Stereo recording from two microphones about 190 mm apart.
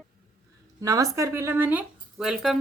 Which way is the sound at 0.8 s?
15° right (ahead or behind).